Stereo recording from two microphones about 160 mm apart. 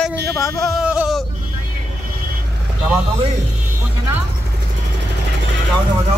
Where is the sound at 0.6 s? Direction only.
Centre (ahead or behind).